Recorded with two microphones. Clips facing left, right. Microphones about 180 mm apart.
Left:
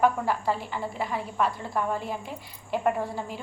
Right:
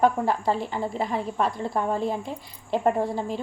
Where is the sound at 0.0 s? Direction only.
35° right (ahead or behind).